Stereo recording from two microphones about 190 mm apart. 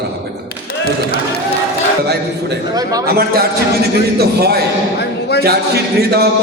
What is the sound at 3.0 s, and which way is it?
A man's voice, 55° right (ahead or behind).